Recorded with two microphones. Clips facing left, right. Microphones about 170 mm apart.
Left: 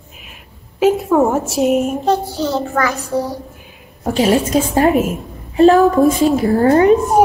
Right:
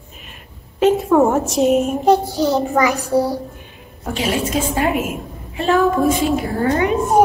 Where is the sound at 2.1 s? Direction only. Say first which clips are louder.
Right 2 dB; 15° right (ahead or behind).